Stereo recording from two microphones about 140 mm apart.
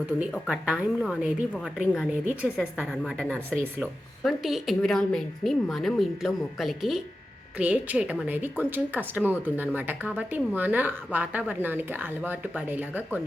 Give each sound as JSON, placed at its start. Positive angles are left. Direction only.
{"t": 0.2, "sound": "a woman's voice", "side_deg": -5}
{"t": 3.5, "sound": "speech", "side_deg": -15}
{"t": 4.2, "sound": "a woman's voice", "side_deg": 0}